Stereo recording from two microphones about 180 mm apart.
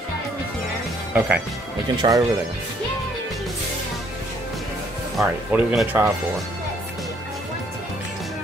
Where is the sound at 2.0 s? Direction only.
20° right (ahead or behind).